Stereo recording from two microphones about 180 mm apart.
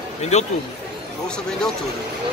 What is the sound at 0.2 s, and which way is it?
Speech, 40° left (ahead or behind).